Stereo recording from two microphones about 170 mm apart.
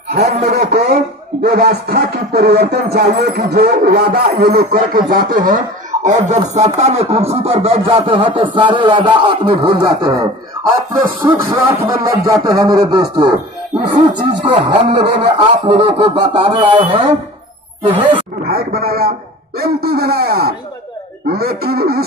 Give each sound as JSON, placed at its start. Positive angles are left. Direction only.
{"t": 0.2, "sound": "a sound", "side_deg": -40}
{"t": 1.4, "sound": "music", "side_deg": -65}
{"t": 4.9, "sound": "speech", "side_deg": -55}
{"t": 6.0, "sound": "a sound", "side_deg": -45}
{"t": 10.9, "sound": "speech", "side_deg": -15}
{"t": 18.5, "sound": "a man's voice", "side_deg": -65}